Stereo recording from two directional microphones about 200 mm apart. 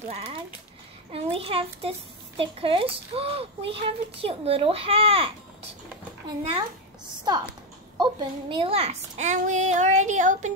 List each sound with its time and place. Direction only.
0.1 s a child's voice: 30° right (ahead or behind)
8.0 s a child's voice: 25° right (ahead or behind)